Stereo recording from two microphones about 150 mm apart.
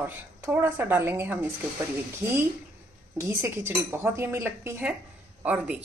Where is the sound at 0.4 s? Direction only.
10° right (ahead or behind).